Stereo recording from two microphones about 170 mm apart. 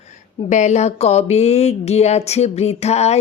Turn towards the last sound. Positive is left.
turn(degrees=40)  # may be behind; listen again after turning